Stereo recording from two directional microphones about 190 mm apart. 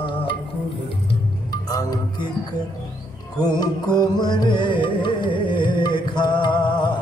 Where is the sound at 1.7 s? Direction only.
20° left (ahead or behind).